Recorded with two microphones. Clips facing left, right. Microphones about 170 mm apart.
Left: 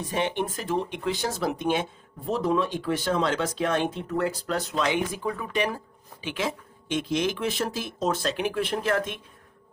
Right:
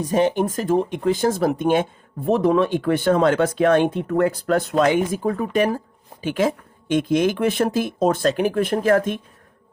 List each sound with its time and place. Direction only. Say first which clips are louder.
0.0 s speech: right 8 dB; 40° right (ahead or behind)